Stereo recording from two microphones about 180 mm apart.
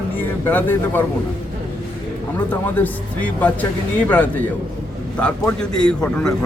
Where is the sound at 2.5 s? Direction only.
10° left (ahead or behind).